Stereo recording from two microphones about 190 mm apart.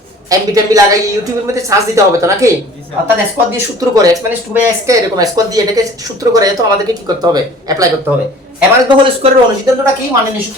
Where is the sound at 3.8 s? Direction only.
20° right (ahead or behind).